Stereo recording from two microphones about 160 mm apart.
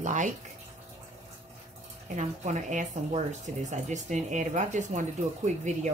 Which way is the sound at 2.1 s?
50° right (ahead or behind).